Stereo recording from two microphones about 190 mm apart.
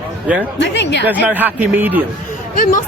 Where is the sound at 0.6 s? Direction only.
65° left (ahead or behind).